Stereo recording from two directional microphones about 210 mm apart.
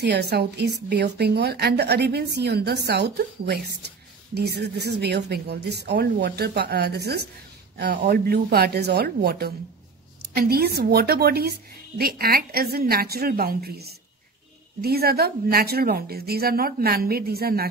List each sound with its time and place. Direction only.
0.0 s a woman's voice: 50° right (ahead or behind)